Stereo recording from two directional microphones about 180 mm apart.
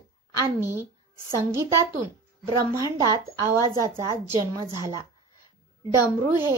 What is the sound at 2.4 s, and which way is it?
A woman's voice, 15° right (ahead or behind).